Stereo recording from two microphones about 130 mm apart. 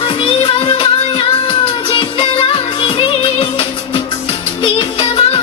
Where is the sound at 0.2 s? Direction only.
40° left (ahead or behind).